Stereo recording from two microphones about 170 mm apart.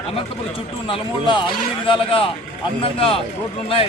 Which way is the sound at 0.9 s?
30° left (ahead or behind).